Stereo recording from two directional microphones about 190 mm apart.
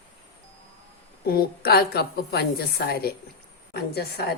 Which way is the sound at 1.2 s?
50° left (ahead or behind).